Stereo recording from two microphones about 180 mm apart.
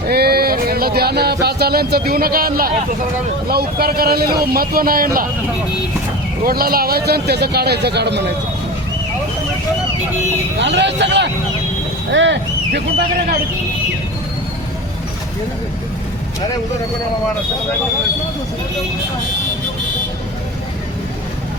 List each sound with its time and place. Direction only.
0.1 s a man's voice: 60° right (ahead or behind)
6.4 s a man's voice: 55° right (ahead or behind)
10.6 s speech: 75° right (ahead or behind)